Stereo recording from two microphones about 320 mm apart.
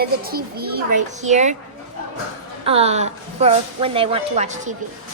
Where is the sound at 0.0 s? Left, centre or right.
Right.